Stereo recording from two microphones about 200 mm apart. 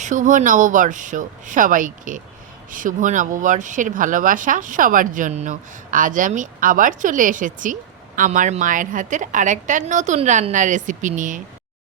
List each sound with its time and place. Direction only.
0.0 s speech: 40° right (ahead or behind)